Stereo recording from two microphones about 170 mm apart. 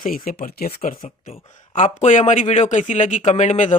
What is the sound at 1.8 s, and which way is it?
A man's voice, 45° left (ahead or behind).